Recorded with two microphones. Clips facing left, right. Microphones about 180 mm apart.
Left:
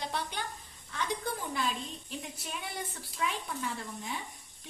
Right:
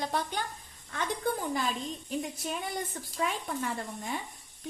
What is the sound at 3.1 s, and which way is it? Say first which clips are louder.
A woman's voice: right 3 dB; 50° right (ahead or behind).